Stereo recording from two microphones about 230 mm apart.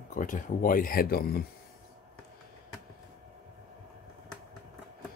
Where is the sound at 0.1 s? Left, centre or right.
Left.